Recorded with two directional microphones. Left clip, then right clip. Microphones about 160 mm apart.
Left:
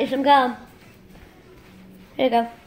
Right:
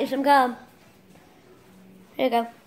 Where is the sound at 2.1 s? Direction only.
5° right (ahead or behind).